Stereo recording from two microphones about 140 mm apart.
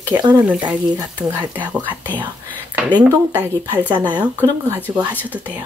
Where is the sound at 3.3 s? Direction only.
15° right (ahead or behind).